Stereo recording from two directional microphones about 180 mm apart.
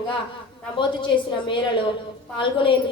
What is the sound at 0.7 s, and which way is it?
A woman's voice, 25° left (ahead or behind).